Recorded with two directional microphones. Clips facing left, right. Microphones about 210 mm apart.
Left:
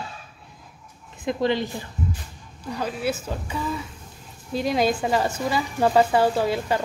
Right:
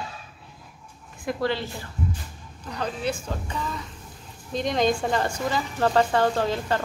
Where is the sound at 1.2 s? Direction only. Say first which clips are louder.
Left 3 dB; 20° left (ahead or behind).